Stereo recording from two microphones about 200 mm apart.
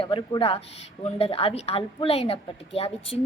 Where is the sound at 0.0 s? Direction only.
25° left (ahead or behind).